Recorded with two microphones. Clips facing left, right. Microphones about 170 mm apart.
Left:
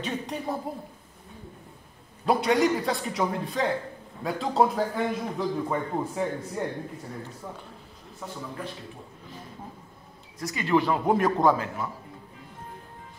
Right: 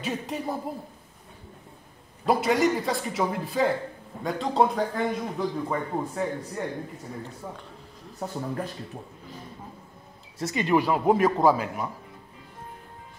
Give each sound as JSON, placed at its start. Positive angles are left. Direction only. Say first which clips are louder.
{"t": 0.0, "sound": "a man's voice", "louder": "right 1 dB", "side_deg": 0}
{"t": 2.2, "sound": "a man's voice", "louder": "even", "side_deg": 0}
{"t": 8.2, "sound": "speech", "louder": "right 6 dB", "side_deg": -45}
{"t": 10.4, "sound": "speech", "louder": "right 1 dB", "side_deg": -20}
{"t": 11.5, "sound": "speech", "louder": "right 1 dB", "side_deg": -15}